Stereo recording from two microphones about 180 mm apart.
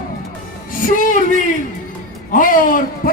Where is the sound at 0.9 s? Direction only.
50° left (ahead or behind).